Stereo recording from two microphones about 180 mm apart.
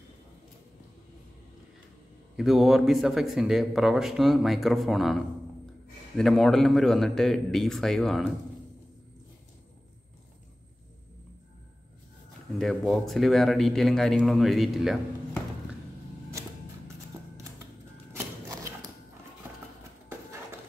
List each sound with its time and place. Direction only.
2.3 s a man's voice: centre (ahead or behind)
12.5 s a man's voice: centre (ahead or behind)
16.3 s creak: 15° right (ahead or behind)